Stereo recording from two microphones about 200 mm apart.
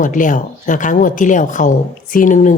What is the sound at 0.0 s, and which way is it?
Speech, 40° left (ahead or behind).